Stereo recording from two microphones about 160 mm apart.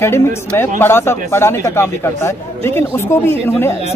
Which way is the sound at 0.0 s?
15° left (ahead or behind).